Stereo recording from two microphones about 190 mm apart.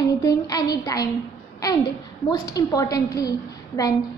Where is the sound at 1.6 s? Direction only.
20° left (ahead or behind).